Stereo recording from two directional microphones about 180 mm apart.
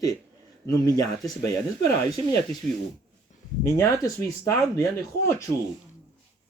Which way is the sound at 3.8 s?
15° left (ahead or behind).